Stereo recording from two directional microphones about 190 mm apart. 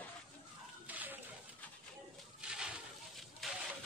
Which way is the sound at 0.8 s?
10° right (ahead or behind).